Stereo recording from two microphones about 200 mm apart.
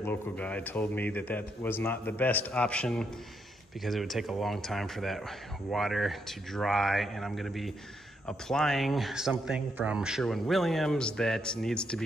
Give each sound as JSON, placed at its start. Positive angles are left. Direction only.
{"t": 0.0, "sound": "a man's voice", "side_deg": 10}